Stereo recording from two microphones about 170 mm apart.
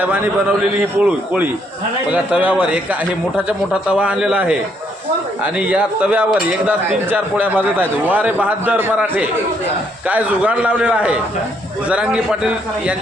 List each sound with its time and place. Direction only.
0.8 s speech: 5° right (ahead or behind)